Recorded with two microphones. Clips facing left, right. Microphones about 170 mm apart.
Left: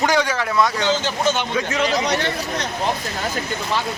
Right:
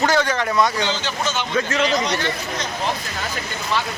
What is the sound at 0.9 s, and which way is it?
Speech, 50° left (ahead or behind).